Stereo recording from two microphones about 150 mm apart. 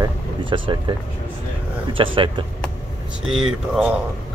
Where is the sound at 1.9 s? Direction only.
35° right (ahead or behind).